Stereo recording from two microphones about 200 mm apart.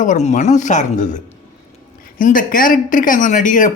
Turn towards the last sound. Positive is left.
turn(degrees=40)  # may be behind; listen again after turning